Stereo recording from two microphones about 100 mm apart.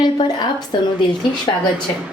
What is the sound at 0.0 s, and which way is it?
Speech, 50° left (ahead or behind).